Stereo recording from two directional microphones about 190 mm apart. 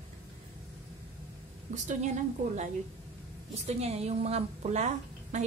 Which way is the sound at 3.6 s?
35° right (ahead or behind).